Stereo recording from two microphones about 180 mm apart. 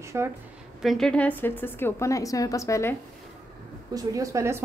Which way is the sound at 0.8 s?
Centre (ahead or behind).